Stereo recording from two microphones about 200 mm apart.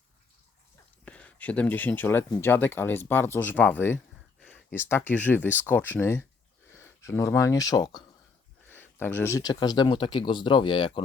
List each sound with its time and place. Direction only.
1.0 s speech: 5° left (ahead or behind); by 11.0 s 25° left (ahead or behind)